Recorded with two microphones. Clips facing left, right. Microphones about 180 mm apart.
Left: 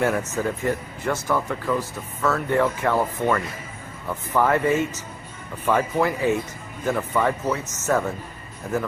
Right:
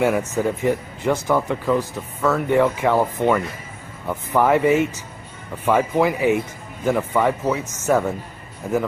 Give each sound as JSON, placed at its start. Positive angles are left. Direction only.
{"t": 0.4, "sound": "speech", "side_deg": -15}